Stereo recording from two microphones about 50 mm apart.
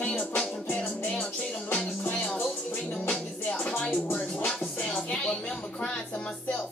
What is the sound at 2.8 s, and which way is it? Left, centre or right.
Music, centre.